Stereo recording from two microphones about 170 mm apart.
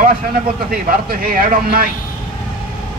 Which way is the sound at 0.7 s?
60° right (ahead or behind).